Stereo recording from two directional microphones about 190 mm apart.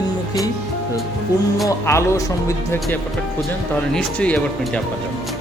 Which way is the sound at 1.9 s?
15° left (ahead or behind).